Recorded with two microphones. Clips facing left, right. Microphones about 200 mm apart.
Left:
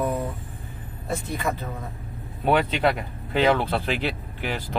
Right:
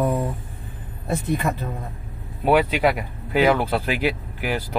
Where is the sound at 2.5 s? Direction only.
10° right (ahead or behind).